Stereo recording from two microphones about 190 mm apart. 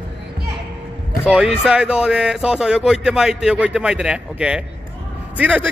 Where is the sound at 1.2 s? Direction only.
5° right (ahead or behind).